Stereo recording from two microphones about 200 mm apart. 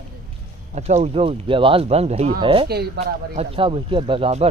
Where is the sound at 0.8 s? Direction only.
30° right (ahead or behind).